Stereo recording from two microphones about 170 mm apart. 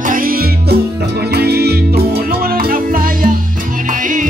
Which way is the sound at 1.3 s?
70° right (ahead or behind).